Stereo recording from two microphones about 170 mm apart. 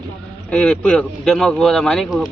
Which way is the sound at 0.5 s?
5° left (ahead or behind).